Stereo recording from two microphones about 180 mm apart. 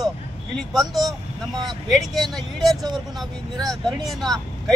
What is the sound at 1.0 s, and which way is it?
Speech, 20° right (ahead or behind).